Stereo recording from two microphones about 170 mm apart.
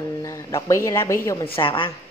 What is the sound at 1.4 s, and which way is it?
Speech, 30° left (ahead or behind).